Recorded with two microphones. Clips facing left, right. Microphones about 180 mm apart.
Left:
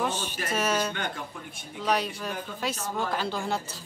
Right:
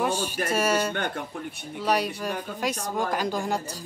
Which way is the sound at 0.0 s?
10° right (ahead or behind).